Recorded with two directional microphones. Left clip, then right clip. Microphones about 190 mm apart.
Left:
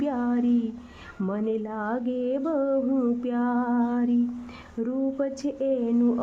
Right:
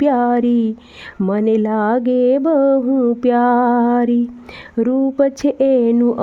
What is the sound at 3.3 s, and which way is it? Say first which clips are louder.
Speech: right 14 dB; 45° right (ahead or behind).